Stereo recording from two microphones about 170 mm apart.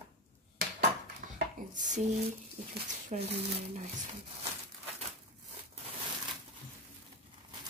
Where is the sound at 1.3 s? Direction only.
50° right (ahead or behind).